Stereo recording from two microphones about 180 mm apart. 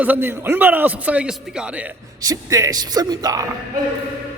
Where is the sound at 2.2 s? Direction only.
20° right (ahead or behind).